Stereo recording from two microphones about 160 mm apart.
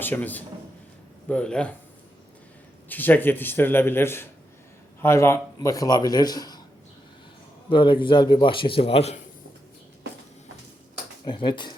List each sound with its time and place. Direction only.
0.0 s a man's voice: 10° left (ahead or behind)
2.9 s a man's voice: 10° left (ahead or behind)
7.7 s a man's voice: 30° left (ahead or behind)
11.3 s a man's voice: 30° left (ahead or behind)